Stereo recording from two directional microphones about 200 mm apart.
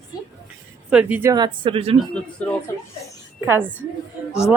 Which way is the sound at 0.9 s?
10° right (ahead or behind).